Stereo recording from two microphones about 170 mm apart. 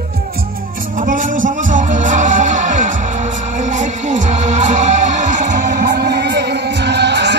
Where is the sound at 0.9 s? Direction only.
50° right (ahead or behind).